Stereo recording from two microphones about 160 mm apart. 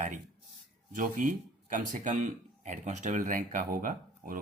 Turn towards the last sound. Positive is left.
turn(degrees=-60)  # may be behind; listen again after turning